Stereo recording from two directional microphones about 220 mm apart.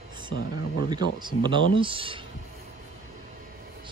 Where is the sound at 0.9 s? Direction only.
20° right (ahead or behind).